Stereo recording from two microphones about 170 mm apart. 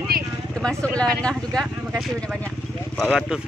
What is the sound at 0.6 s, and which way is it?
Speech, 5° left (ahead or behind).